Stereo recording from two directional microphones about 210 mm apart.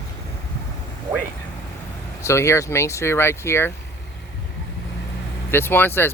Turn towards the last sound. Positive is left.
turn(degrees=10)  # may be behind; listen again after turning